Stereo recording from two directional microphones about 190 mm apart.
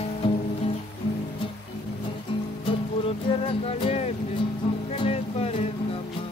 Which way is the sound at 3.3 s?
30° left (ahead or behind).